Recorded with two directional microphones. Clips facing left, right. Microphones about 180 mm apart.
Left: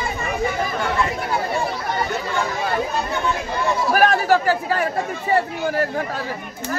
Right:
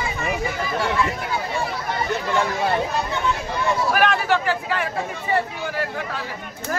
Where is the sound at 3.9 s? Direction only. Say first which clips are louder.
Left 7 dB; 40° left (ahead or behind).